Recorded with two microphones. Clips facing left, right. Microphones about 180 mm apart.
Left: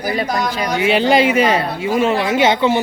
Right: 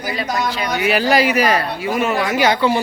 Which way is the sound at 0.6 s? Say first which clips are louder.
Left 3 dB; 30° left (ahead or behind).